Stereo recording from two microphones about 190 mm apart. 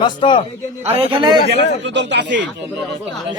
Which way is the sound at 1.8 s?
65° right (ahead or behind).